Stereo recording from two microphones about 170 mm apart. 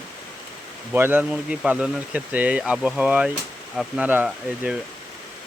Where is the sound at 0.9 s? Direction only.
10° right (ahead or behind).